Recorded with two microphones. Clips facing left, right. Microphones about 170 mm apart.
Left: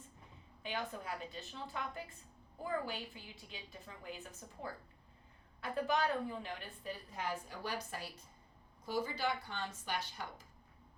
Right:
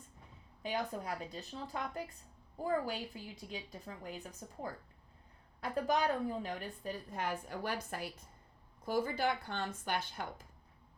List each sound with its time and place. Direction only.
0.6 s a woman's voice: 40° right (ahead or behind)